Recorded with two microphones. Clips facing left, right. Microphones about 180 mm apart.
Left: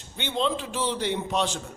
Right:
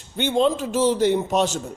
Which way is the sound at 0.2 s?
45° right (ahead or behind).